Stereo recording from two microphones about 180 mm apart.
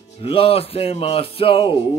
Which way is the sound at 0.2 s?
30° left (ahead or behind).